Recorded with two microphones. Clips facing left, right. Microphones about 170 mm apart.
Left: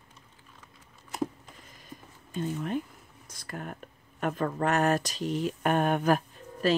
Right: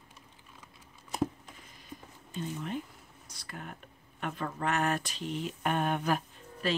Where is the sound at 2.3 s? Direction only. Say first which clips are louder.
Left 5 dB; 50° left (ahead or behind).